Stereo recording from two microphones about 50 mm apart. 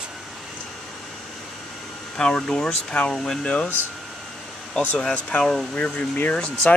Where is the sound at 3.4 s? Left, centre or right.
Left.